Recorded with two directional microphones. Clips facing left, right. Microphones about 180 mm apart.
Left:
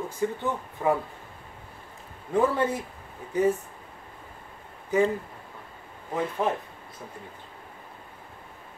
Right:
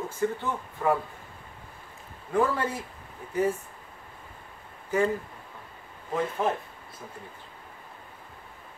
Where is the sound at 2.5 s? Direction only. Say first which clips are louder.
Left 4 dB; 20° left (ahead or behind).